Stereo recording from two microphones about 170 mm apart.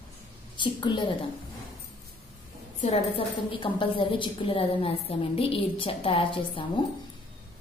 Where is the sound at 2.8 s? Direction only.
35° left (ahead or behind).